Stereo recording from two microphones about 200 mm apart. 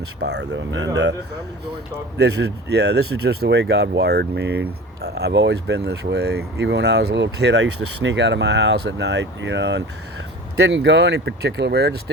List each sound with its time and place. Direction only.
0.2 s speech: 60° right (ahead or behind)
2.1 s speech: 55° right (ahead or behind)